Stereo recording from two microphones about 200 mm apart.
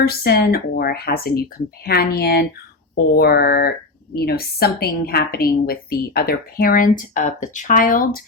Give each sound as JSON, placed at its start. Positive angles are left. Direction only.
{"t": 0.0, "sound": "a woman's voice", "side_deg": 50}